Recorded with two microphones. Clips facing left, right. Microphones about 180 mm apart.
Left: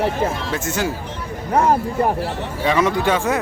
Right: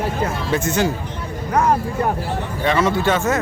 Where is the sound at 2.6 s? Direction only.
10° left (ahead or behind).